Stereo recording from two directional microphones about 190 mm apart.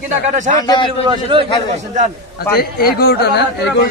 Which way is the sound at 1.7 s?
40° right (ahead or behind).